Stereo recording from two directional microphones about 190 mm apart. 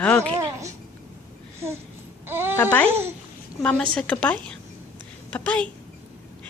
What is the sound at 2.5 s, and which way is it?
A woman's voice, 10° left (ahead or behind).